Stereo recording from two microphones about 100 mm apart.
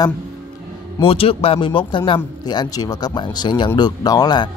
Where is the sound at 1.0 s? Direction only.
70° left (ahead or behind).